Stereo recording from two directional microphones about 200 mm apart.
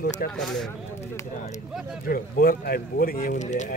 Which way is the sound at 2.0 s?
45° left (ahead or behind).